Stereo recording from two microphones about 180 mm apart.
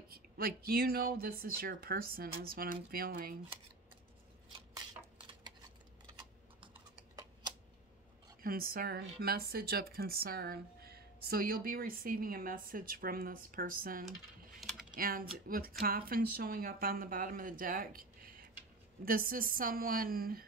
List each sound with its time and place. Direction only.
0.1 s speech: 55° right (ahead or behind)
4.5 s a sound: 25° right (ahead or behind)
8.4 s speech: 55° right (ahead or behind)